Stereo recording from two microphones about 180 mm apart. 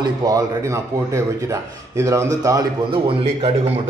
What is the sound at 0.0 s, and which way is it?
Speech, 20° right (ahead or behind).